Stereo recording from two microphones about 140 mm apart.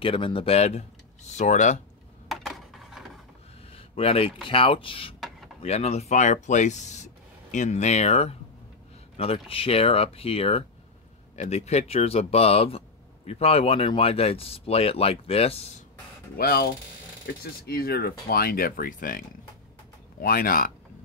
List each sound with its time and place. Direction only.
0.0 s speech: 40° left (ahead or behind); by 1.8 s 60° left (ahead or behind)
2.2 s a sound: centre (ahead or behind)
3.7 s speech: 45° left (ahead or behind)
16.3 s speech: 90° left